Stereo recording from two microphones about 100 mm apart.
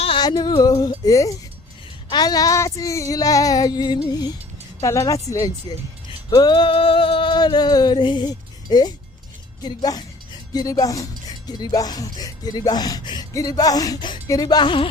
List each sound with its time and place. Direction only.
0.2 s speech: 45° left (ahead or behind)
4.8 s speech: 30° left (ahead or behind)
6.3 s music: 45° left (ahead or behind)
9.6 s speech: 40° left (ahead or behind)
14.3 s music: 40° left (ahead or behind)